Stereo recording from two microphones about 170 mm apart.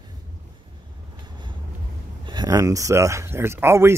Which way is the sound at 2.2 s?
25° right (ahead or behind).